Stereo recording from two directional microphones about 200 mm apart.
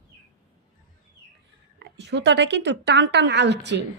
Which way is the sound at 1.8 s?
60° right (ahead or behind).